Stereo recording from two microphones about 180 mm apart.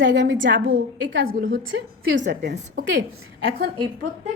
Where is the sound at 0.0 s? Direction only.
80° right.